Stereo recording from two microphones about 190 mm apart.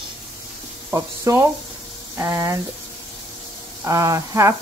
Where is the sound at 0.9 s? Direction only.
15° right (ahead or behind).